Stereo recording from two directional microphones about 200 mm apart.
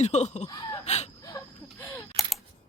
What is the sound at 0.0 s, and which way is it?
Speech, 35° left (ahead or behind).